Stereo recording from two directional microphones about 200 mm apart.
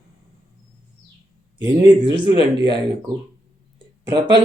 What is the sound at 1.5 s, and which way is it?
Speech, 20° right (ahead or behind).